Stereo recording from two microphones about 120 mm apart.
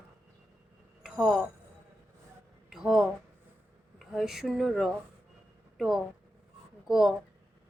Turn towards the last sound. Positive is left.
turn(degrees=-5)  # may be behind; listen again after turning